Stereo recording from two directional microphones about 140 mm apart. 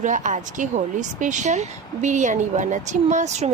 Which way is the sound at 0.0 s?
65° right (ahead or behind).